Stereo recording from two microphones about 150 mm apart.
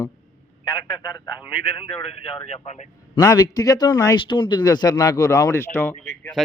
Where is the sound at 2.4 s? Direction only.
50° left (ahead or behind).